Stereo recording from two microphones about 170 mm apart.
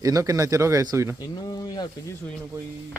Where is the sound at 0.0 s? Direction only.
20° right (ahead or behind).